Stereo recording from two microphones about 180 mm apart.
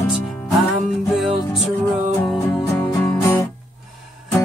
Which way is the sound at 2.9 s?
15° left (ahead or behind).